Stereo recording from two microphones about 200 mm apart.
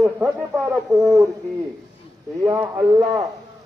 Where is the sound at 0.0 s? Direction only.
5° right (ahead or behind).